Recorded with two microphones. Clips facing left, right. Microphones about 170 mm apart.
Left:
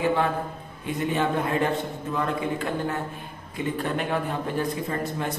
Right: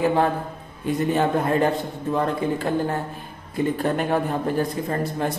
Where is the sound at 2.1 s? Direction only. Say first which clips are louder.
Right 4 dB; 35° right (ahead or behind).